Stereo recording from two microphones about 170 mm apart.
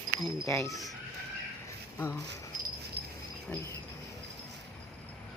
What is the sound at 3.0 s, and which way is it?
Dog, 75° right (ahead or behind).